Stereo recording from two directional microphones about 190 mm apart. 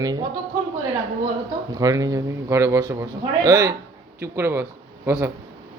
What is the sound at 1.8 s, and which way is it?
A man's voice, 20° right (ahead or behind).